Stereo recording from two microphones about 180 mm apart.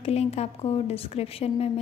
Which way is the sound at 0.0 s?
35° left (ahead or behind).